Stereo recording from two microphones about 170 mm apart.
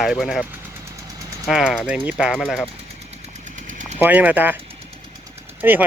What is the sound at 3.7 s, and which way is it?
Engine, 45° right (ahead or behind).